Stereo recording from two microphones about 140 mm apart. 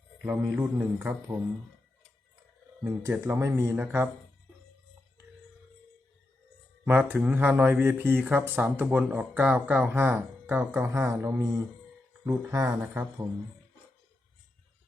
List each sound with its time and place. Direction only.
0.2 s speech: 10° right (ahead or behind)
2.8 s speech: 20° right (ahead or behind)
6.8 s speech: 15° right (ahead or behind)